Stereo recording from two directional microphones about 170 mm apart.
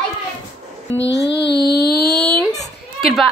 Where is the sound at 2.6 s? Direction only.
Centre (ahead or behind).